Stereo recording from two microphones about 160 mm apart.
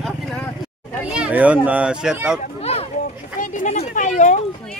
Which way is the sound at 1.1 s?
5° right (ahead or behind).